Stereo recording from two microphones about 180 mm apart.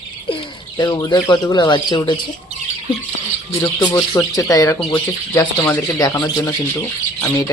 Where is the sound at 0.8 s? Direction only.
20° left (ahead or behind).